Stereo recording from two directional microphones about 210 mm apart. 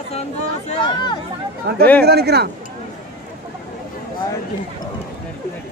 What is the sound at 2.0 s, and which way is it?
Speech, 50° right (ahead or behind).